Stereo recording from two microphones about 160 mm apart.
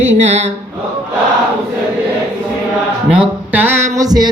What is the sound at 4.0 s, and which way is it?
Music, 25° right (ahead or behind).